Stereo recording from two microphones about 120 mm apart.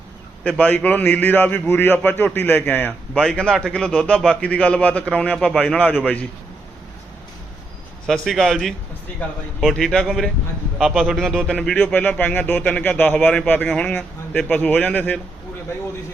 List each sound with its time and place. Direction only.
0.6 s a man's voice: 10° left (ahead or behind)
3.2 s a man's voice: 5° left (ahead or behind)
8.0 s a man's voice: centre (ahead or behind)